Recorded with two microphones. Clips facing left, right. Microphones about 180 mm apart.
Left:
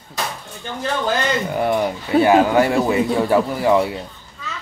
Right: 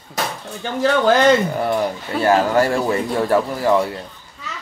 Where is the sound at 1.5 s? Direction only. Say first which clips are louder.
Left 1 dB; 5° left (ahead or behind).